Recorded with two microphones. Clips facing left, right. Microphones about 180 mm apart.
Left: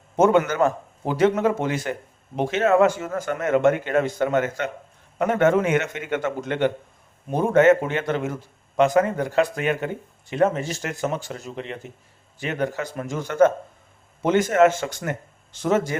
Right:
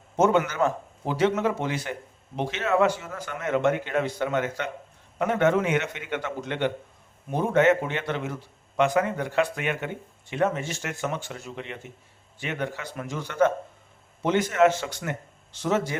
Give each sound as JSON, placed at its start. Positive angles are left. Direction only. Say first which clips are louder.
{"t": 0.2, "sound": "a man's voice", "louder": "left 4 dB", "side_deg": 50}